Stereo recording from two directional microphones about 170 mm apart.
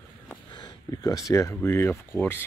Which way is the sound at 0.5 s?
25° left (ahead or behind).